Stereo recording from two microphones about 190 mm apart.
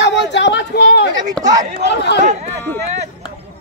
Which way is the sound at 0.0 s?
65° left (ahead or behind).